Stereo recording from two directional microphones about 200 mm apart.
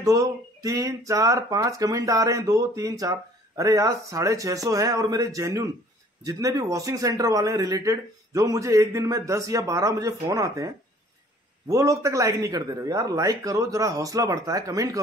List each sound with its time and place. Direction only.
0.0 s speech: 15° right (ahead or behind)
11.7 s speech: 15° right (ahead or behind)